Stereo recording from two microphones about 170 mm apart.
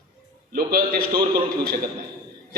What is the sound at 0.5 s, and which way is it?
Speech, 60° right (ahead or behind).